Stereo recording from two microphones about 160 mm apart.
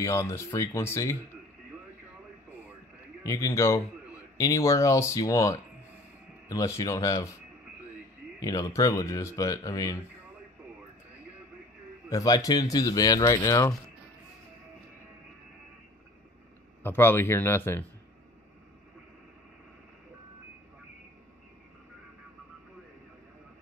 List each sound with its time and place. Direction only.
0.0 s speech: 20° left (ahead or behind)
3.3 s speech: 20° left (ahead or behind)
8.4 s speech: 25° left (ahead or behind)
12.1 s speech: 20° left (ahead or behind)
16.8 s speech: 15° left (ahead or behind)